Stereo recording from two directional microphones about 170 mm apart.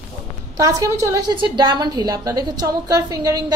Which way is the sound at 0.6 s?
20° right (ahead or behind).